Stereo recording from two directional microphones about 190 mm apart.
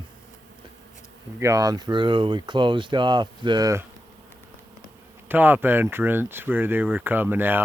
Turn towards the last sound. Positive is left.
turn(degrees=-10)  # may be behind; listen again after turning